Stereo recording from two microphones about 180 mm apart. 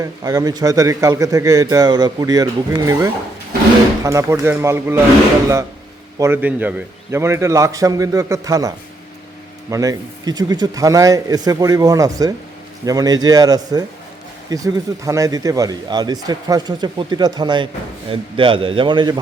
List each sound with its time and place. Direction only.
0.0 s a man's voice: 20° right (ahead or behind)
6.1 s a man's voice: 15° right (ahead or behind)